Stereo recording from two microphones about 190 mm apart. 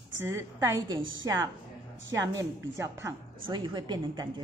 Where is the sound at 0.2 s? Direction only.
15° right (ahead or behind).